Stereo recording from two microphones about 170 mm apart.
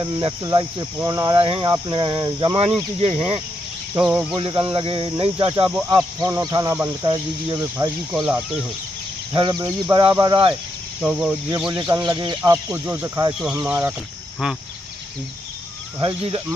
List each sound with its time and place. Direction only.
0.0 s speech: 20° right (ahead or behind)
3.9 s speech: 15° right (ahead or behind)
4.4 s speech: 30° right (ahead or behind); by 8.5 s 5° right (ahead or behind)
9.3 s speech: 25° right (ahead or behind)
10.5 s speech: 10° right (ahead or behind)
11.6 s speech: 20° right (ahead or behind)
13.3 s speech: 5° right (ahead or behind)
16.0 s speech: 30° right (ahead or behind)